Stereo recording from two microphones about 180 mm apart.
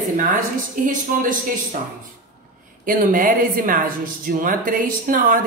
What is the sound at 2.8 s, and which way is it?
A woman's voice, 50° right (ahead or behind).